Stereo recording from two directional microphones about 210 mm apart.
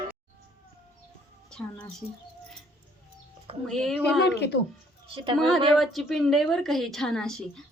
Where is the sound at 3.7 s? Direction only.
Centre (ahead or behind).